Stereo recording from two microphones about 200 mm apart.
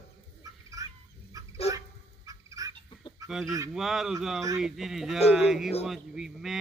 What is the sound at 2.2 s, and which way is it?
Fowl, 15° right (ahead or behind).